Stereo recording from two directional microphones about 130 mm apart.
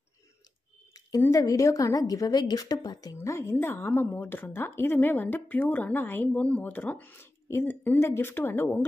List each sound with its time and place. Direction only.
1.2 s a woman's voice: 25° left (ahead or behind)
3.2 s a woman's voice: 20° left (ahead or behind)